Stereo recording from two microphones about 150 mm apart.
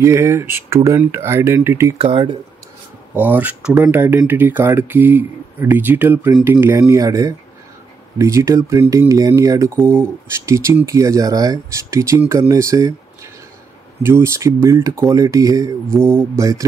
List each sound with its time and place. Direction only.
0.0 s speech: 20° right (ahead or behind)
2.0 s speech: 35° right (ahead or behind)
3.2 s speech: 10° right (ahead or behind)